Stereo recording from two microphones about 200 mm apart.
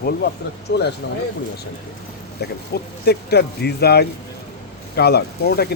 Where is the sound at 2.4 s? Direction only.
55° left (ahead or behind).